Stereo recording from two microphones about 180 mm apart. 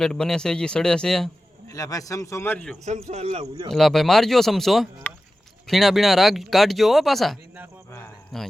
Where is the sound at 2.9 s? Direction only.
40° right (ahead or behind).